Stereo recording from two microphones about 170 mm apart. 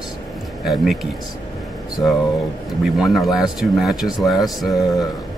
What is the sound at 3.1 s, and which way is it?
Speech, centre (ahead or behind).